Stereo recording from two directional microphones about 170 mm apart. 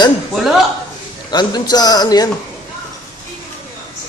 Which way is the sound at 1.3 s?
25° left (ahead or behind).